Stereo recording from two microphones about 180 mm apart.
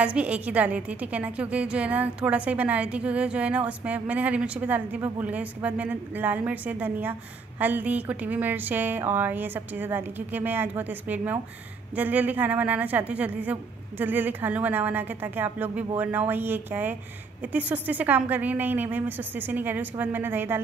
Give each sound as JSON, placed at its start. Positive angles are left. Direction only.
{"t": 0.0, "sound": "a woman's voice", "side_deg": -5}